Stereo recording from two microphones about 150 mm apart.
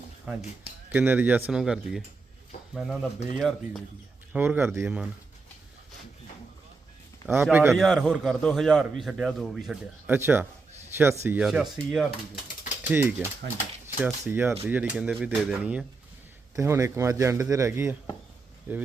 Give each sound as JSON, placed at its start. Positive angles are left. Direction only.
{"t": 0.3, "sound": "a man's voice", "side_deg": -10}
{"t": 7.7, "sound": "a man's voice", "side_deg": 0}
{"t": 10.1, "sound": "speech", "side_deg": -15}
{"t": 11.3, "sound": "a man's voice", "side_deg": -5}
{"t": 12.9, "sound": "speech", "side_deg": -15}
{"t": 13.4, "sound": "speech", "side_deg": -90}
{"t": 13.8, "sound": "speech", "side_deg": -15}
{"t": 16.6, "sound": "a man's voice", "side_deg": -20}